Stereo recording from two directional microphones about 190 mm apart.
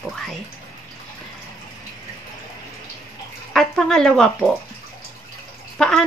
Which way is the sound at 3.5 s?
5° left (ahead or behind).